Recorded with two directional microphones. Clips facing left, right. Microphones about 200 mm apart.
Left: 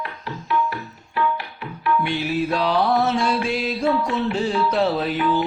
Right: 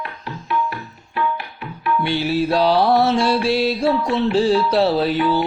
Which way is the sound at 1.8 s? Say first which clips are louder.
Right 2 dB; 30° right (ahead or behind).